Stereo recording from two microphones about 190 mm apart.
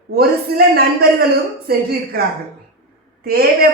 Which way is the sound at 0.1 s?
55° right (ahead or behind).